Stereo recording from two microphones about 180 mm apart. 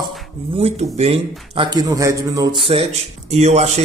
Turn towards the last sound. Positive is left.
turn(degrees=-35)  # may be behind; listen again after turning